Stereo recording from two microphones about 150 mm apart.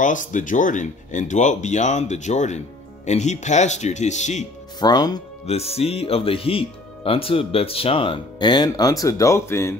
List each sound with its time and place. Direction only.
0.0 s speech: 60° left (ahead or behind)
4.7 s speech: 25° left (ahead or behind)
5.5 s speech: 45° left (ahead or behind); by 9.8 s 20° left (ahead or behind)